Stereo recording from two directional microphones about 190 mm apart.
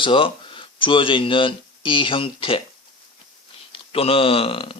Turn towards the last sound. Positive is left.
turn(degrees=30)  # may be behind; listen again after turning